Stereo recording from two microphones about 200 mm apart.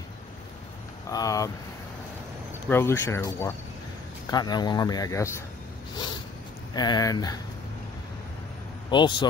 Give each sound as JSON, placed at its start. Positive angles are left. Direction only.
{"t": 1.1, "sound": "speech", "side_deg": 15}
{"t": 2.7, "sound": "speech", "side_deg": 10}
{"t": 6.7, "sound": "speech", "side_deg": 20}
{"t": 8.9, "sound": "speech", "side_deg": 25}